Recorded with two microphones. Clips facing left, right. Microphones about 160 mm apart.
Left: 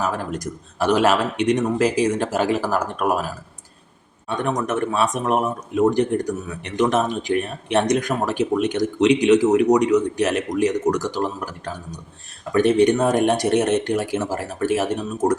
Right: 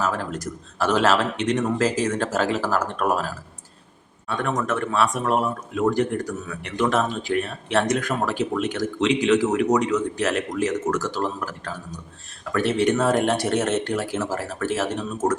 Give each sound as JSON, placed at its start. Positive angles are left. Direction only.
{"t": 0.0, "sound": "speech", "side_deg": 15}
{"t": 4.4, "sound": "speech", "side_deg": 20}